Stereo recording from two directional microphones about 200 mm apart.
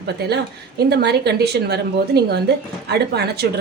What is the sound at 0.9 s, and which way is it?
A woman's voice, 55° right (ahead or behind).